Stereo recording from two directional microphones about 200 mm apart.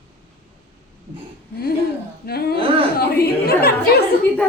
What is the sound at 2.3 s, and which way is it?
A woman's voice, 50° left (ahead or behind).